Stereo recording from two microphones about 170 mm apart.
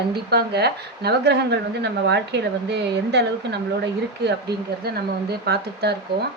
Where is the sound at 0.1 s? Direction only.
75° right (ahead or behind).